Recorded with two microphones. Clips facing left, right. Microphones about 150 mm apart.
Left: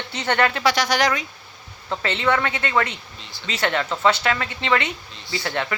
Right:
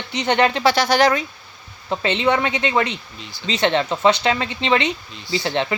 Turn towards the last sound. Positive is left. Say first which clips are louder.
# right 4 dB
turn(degrees=-25)  # may be behind; listen again after turning